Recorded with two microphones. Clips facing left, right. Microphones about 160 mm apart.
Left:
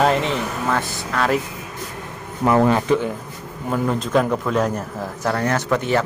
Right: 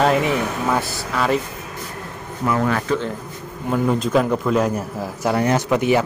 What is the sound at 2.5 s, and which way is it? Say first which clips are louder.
Speech: left 4 dB; 25° left (ahead or behind).